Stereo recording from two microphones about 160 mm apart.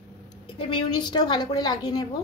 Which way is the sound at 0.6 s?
35° left (ahead or behind).